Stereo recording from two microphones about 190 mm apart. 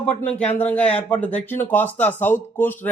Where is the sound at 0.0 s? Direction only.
5° left (ahead or behind).